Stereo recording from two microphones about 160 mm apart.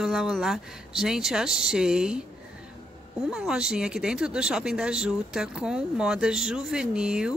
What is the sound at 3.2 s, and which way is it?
Speech, 5° right (ahead or behind).